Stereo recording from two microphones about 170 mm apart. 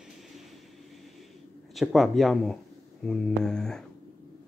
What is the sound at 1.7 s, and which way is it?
Speech, centre (ahead or behind).